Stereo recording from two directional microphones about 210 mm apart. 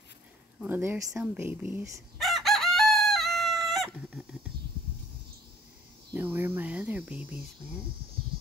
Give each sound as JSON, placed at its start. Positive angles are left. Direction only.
{"t": 0.6, "sound": "chicken", "side_deg": -10}
{"t": 6.1, "sound": "speech", "side_deg": -10}